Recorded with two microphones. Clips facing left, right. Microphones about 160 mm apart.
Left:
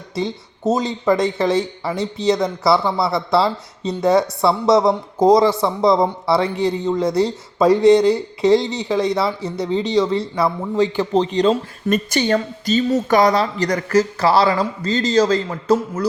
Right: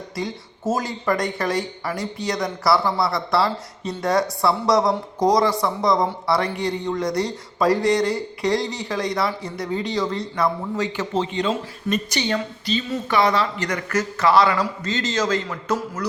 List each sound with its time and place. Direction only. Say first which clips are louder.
0.2 s speech: left 6 dB; 20° left (ahead or behind)
9.8 s speech: left 6 dB; centre (ahead or behind)
10.4 s speech: left 3 dB; 30° left (ahead or behind)
11.9 s speech: left 6 dB; 50° left (ahead or behind); by 16.0 s 30° left (ahead or behind)